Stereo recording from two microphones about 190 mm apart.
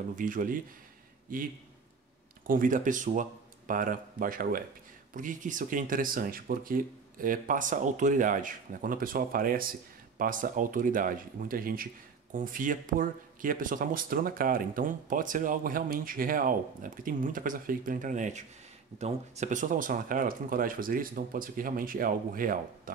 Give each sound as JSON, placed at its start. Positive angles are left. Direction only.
{"t": 0.1, "sound": "speech", "side_deg": -45}